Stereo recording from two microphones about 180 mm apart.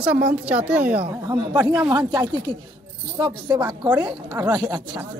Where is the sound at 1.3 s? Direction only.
25° right (ahead or behind).